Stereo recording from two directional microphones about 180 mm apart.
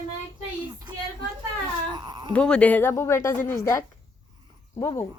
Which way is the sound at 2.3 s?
5° left (ahead or behind).